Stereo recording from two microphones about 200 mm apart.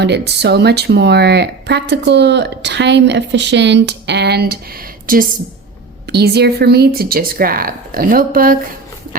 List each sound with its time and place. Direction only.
0.0 s speech: 55° right (ahead or behind)